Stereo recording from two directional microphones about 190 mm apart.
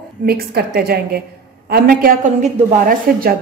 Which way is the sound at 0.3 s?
55° right (ahead or behind).